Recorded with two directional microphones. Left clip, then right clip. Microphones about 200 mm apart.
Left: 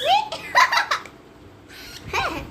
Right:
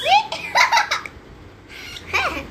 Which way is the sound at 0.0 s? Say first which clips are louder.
Right 3 dB; 50° left (ahead or behind).